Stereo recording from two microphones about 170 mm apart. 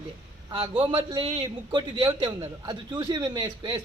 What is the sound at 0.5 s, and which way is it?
A man's voice, 30° right (ahead or behind).